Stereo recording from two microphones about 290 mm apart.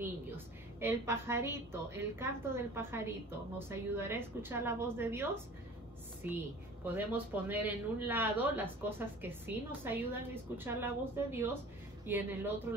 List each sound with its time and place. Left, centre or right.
0.7 s speech: centre